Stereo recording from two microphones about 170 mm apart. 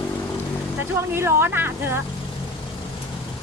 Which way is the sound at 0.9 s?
15° right (ahead or behind).